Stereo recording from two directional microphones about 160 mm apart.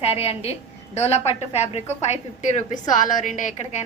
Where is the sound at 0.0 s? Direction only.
40° left (ahead or behind).